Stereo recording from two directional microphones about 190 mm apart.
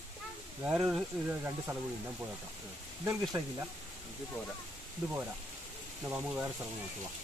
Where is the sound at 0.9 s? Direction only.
5° right (ahead or behind).